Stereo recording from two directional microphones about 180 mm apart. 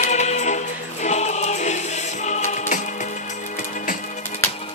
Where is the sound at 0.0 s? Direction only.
40° left (ahead or behind).